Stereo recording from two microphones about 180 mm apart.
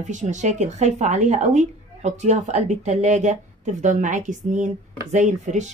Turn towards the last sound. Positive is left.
turn(degrees=-40)  # may be behind; listen again after turning